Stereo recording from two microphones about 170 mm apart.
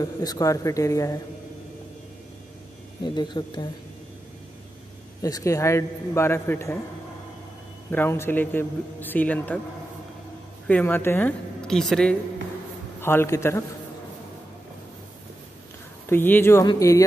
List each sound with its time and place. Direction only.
0.0 s a man's voice: 20° left (ahead or behind)
3.0 s a man's voice: 25° left (ahead or behind)
5.2 s a man's voice: 20° left (ahead or behind)
7.9 s a man's voice: 15° left (ahead or behind)
10.7 s a man's voice: 10° left (ahead or behind)
13.0 s a man's voice: 15° left (ahead or behind)
16.1 s a man's voice: 10° left (ahead or behind)